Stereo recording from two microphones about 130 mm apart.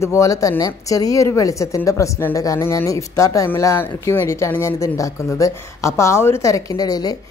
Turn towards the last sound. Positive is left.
turn(degrees=30)  # may be behind; listen again after turning